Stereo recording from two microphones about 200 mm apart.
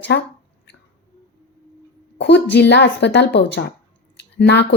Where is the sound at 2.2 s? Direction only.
60° left (ahead or behind).